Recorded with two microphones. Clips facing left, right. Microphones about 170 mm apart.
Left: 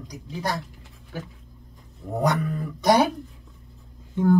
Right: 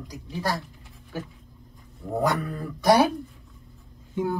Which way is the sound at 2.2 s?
20° left (ahead or behind).